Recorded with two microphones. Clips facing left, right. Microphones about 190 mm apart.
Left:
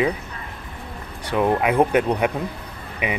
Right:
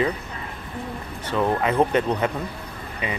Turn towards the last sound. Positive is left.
turn(degrees=15)  # may be behind; listen again after turning